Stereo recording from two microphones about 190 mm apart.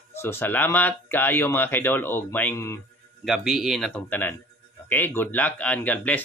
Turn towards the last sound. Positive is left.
turn(degrees=10)  # may be behind; listen again after turning